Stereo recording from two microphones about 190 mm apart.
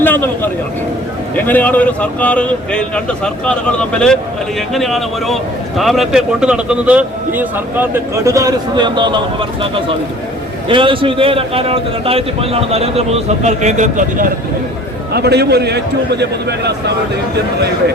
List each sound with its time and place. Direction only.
0.0 s a man's voice: 10° left (ahead or behind); by 14.3 s 40° right (ahead or behind)
15.1 s a man's voice: 60° right (ahead or behind)